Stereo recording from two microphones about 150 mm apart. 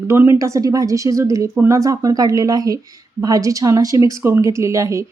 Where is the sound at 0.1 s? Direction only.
15° right (ahead or behind).